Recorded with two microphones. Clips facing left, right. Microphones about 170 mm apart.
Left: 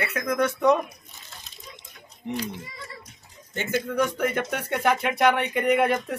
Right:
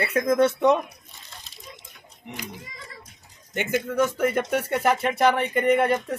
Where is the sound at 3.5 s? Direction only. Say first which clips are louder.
Right 2 dB; 15° right (ahead or behind).